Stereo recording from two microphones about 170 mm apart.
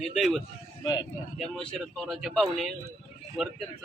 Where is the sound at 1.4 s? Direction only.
Centre (ahead or behind).